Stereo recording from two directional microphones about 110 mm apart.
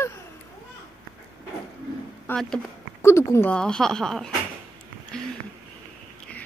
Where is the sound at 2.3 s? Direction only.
20° left (ahead or behind).